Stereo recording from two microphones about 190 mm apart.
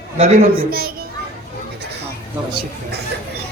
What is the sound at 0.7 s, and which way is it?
Speech, 50° right (ahead or behind).